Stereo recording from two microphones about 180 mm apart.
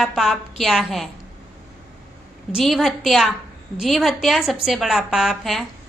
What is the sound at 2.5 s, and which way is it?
A woman's voice, centre (ahead or behind).